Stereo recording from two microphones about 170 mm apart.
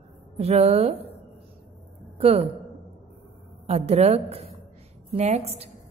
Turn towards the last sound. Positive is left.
turn(degrees=-35)  # may be behind; listen again after turning